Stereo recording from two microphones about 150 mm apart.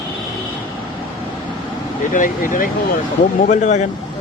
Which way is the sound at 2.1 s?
65° left (ahead or behind).